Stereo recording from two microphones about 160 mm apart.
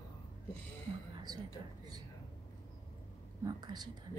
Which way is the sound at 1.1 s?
25° right (ahead or behind).